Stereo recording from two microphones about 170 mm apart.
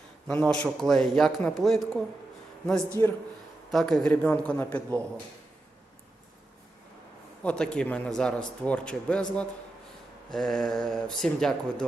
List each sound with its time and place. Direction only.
0.3 s a man's voice: 5° left (ahead or behind)
3.0 s a man's voice: 15° left (ahead or behind)
3.7 s a man's voice: centre (ahead or behind)
7.4 s a man's voice: 5° left (ahead or behind)